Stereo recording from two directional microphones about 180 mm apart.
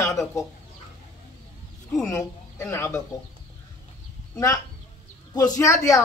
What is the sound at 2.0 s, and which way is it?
Speech, 15° left (ahead or behind).